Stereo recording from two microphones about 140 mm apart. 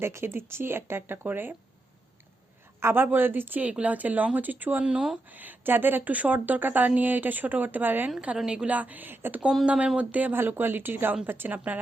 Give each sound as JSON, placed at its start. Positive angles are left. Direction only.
{"t": 0.0, "sound": "speech", "side_deg": -20}
{"t": 2.8, "sound": "speech", "side_deg": -15}